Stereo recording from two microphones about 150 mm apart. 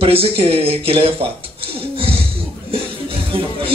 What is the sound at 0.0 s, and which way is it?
A man's voice, 40° right (ahead or behind).